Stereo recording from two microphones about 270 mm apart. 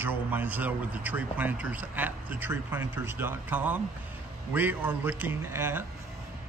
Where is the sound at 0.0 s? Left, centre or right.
Centre.